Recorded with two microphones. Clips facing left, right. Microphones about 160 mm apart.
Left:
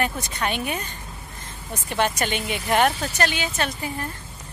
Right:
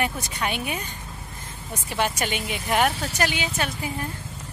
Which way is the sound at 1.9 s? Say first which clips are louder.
Left 2 dB; 5° right (ahead or behind).